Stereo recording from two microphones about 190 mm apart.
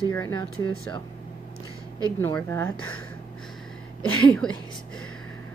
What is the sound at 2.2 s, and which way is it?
Speech, 15° left (ahead or behind).